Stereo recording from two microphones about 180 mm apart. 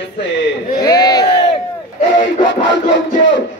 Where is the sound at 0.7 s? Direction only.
20° left (ahead or behind).